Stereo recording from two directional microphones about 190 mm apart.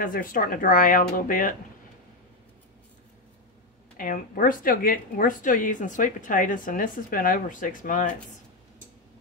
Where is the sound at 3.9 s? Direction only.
45° left (ahead or behind).